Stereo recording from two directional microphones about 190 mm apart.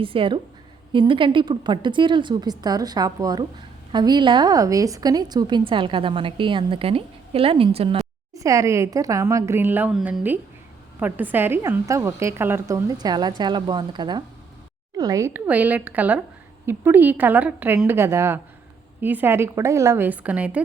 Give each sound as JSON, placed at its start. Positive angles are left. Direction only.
{"t": 0.0, "sound": "a woman's voice", "side_deg": -30}
{"t": 8.4, "sound": "a woman's voice", "side_deg": -15}